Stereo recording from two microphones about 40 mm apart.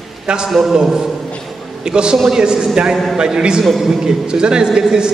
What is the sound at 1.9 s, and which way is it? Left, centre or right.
A man's voice, right.